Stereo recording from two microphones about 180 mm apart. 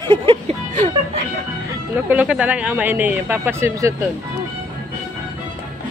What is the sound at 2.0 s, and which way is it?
Speech, 5° right (ahead or behind).